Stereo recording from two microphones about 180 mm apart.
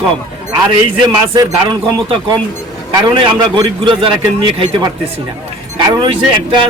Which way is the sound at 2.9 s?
25° right (ahead or behind).